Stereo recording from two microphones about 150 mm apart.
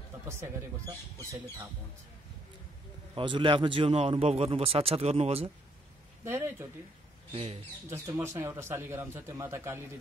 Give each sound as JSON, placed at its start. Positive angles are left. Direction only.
{"t": 0.3, "sound": "speech", "side_deg": -20}
{"t": 3.2, "sound": "speech", "side_deg": -35}
{"t": 6.2, "sound": "speech", "side_deg": -15}
{"t": 7.9, "sound": "speech", "side_deg": -15}